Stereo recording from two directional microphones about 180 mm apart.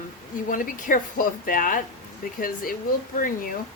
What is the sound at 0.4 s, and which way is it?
Speech, 50° left (ahead or behind).